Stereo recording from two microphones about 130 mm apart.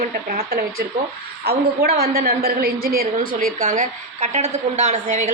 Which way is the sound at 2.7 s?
90° right.